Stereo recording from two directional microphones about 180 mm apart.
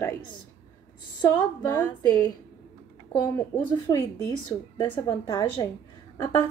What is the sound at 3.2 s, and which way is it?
A woman's voice, 15° left (ahead or behind).